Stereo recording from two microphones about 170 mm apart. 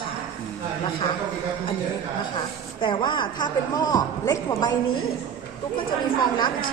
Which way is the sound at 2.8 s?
30° left (ahead or behind).